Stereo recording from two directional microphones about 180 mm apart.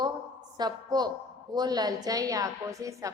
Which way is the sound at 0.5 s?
25° right (ahead or behind).